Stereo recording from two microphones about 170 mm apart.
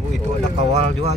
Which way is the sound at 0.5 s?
40° right (ahead or behind).